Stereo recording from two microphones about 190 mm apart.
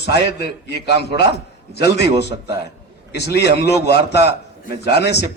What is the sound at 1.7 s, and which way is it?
Speech, 60° left (ahead or behind).